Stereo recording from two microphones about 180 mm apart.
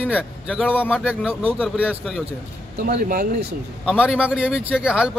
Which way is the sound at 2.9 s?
50° right (ahead or behind).